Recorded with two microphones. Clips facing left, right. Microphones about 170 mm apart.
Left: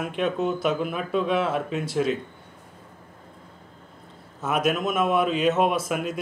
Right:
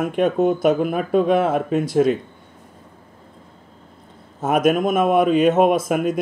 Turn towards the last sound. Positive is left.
turn(degrees=-50)  # may be behind; listen again after turning